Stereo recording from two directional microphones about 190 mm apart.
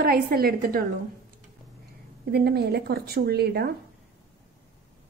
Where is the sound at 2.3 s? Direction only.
55° right (ahead or behind).